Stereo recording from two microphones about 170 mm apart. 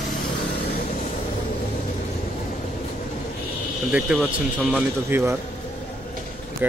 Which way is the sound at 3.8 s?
5° right (ahead or behind).